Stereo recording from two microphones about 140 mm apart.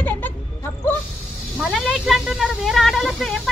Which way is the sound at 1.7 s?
Centre (ahead or behind).